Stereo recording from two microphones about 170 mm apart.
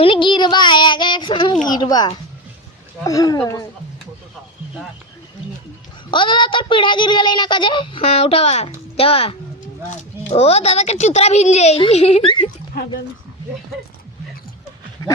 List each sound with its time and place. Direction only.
0.0 s child singing: 30° left (ahead or behind)
1.6 s a woman's voice: 25° left (ahead or behind)
6.1 s a woman's voice: 30° left (ahead or behind)
15.0 s goat: 15° left (ahead or behind)